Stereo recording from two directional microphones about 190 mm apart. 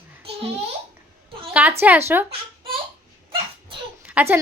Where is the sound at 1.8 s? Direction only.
10° right (ahead or behind).